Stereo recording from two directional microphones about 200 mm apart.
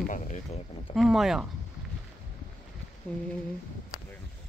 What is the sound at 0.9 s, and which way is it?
Speech, centre (ahead or behind).